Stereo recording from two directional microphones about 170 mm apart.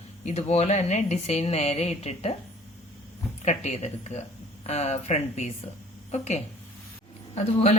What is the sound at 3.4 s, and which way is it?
Speech, 40° left (ahead or behind).